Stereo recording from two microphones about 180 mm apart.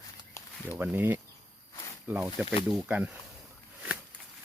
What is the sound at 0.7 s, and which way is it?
Speech, 10° right (ahead or behind).